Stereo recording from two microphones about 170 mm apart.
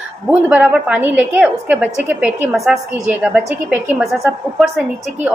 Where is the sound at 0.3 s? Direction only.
10° right (ahead or behind).